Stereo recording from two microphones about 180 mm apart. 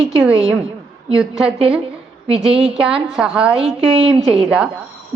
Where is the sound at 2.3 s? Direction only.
30° right (ahead or behind).